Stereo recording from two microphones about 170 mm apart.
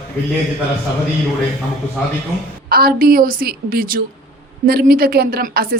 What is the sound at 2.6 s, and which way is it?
Speech, 60° right (ahead or behind).